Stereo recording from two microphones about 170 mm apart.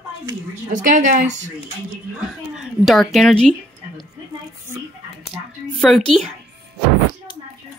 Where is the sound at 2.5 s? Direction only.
Centre (ahead or behind).